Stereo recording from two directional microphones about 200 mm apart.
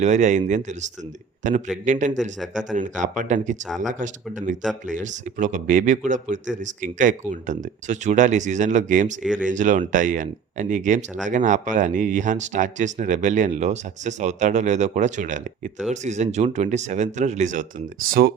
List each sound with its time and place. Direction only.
0.0 s speech: 35° right (ahead or behind)